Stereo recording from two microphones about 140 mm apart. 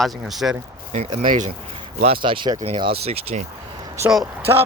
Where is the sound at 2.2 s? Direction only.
35° right (ahead or behind).